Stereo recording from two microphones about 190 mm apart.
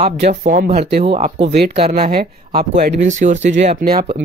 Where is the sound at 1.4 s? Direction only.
60° right (ahead or behind).